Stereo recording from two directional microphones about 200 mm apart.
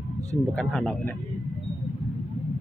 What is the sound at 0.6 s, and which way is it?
Speech, 5° left (ahead or behind).